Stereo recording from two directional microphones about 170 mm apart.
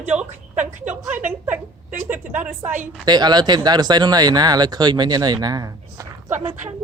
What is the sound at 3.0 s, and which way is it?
Speech, 25° right (ahead or behind).